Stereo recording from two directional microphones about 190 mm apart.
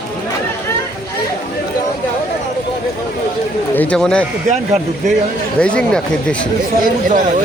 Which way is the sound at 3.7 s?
5° left (ahead or behind).